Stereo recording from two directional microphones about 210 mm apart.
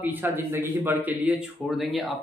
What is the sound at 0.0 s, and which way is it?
Speech, 10° right (ahead or behind).